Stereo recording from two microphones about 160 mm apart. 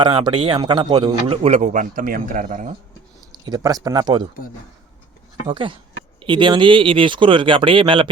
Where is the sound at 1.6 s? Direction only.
55° right (ahead or behind).